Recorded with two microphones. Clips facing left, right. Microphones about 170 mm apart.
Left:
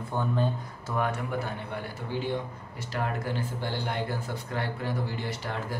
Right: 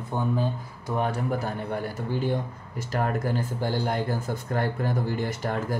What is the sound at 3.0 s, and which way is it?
Speech, 45° right (ahead or behind).